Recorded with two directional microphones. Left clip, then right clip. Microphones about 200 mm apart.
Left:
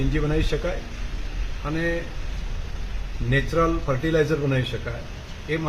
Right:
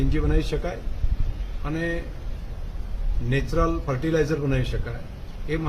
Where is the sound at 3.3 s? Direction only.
20° right (ahead or behind).